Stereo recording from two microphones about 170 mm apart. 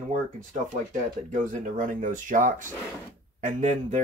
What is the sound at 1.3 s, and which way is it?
Speech, 50° right (ahead or behind).